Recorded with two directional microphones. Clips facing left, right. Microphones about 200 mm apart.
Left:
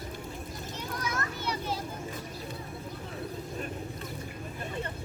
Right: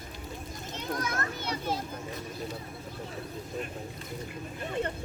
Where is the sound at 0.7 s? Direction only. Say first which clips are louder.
Right 3 dB; 50° right (ahead or behind).